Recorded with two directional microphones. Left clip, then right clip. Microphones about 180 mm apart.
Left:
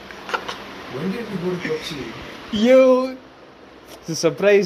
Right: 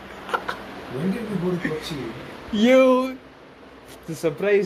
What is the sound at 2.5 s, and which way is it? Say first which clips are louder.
Speech: left 3 dB; 5° right (ahead or behind).